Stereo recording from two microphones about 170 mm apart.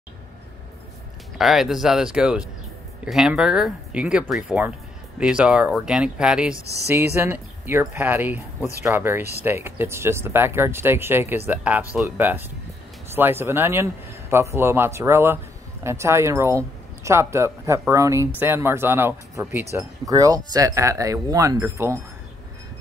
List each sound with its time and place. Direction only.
1.4 s speech: centre (ahead or behind)
6.5 s speech: 15° left (ahead or behind)
7.2 s speech: 10° right (ahead or behind)